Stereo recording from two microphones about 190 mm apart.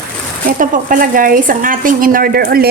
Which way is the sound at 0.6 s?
45° right (ahead or behind).